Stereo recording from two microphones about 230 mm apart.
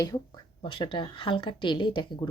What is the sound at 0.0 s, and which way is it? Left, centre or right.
Speech, centre.